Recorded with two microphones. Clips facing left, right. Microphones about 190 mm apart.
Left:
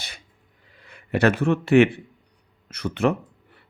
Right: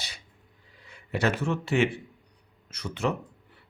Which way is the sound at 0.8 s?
60° left (ahead or behind).